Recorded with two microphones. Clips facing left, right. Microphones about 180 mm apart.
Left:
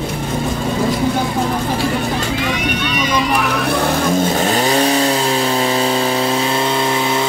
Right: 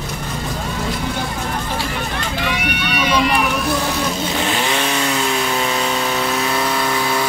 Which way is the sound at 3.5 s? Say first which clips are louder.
Left 3 dB; 60° left (ahead or behind).